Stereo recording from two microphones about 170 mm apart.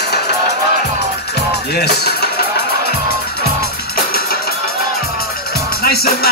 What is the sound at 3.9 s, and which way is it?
Music, 65° left (ahead or behind).